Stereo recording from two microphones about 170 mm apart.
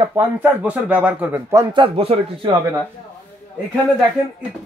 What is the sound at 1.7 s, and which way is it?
Speech, 30° right (ahead or behind).